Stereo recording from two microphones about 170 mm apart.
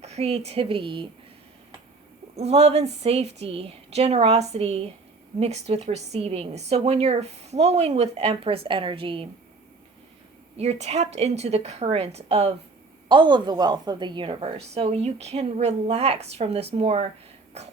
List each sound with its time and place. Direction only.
0.0 s a woman's voice: 40° right (ahead or behind)
2.3 s a woman's voice: 40° right (ahead or behind)
10.6 s a woman's voice: 40° right (ahead or behind)